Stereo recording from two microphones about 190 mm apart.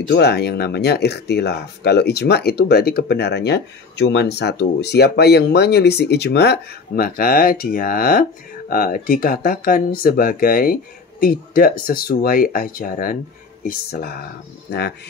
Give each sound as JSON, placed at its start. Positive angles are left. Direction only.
{"t": 0.1, "sound": "speech", "side_deg": 60}